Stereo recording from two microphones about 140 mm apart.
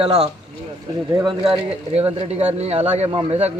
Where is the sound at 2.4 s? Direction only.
50° right (ahead or behind).